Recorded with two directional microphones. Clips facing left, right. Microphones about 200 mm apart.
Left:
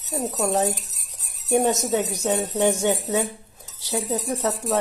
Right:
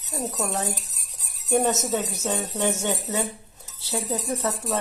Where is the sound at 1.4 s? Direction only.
15° left (ahead or behind).